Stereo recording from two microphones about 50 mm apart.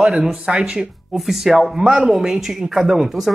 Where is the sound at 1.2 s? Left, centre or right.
Centre.